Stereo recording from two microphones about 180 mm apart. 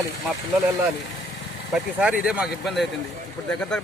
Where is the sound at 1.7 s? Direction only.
5° right (ahead or behind).